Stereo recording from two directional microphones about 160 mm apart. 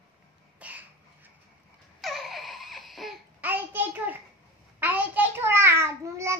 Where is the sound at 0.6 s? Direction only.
10° right (ahead or behind).